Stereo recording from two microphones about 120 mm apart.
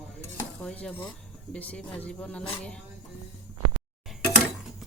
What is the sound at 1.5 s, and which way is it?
Speech, 10° left (ahead or behind).